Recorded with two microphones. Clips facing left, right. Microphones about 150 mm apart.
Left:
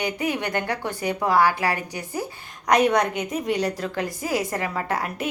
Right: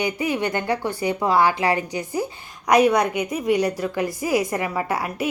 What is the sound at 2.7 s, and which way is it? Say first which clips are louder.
A woman's voice: right 2 dB; 5° right (ahead or behind).